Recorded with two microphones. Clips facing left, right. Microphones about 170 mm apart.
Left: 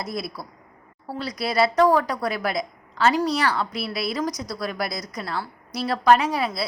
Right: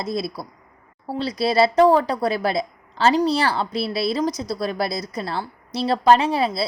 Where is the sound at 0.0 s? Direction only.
25° right (ahead or behind).